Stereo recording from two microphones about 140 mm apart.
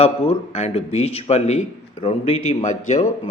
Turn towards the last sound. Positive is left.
turn(degrees=55)  # may be behind; listen again after turning